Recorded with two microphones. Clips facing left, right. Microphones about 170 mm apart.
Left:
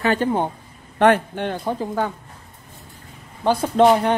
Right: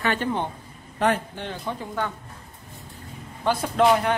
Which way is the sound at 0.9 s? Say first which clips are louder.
Left 7 dB; 65° left (ahead or behind).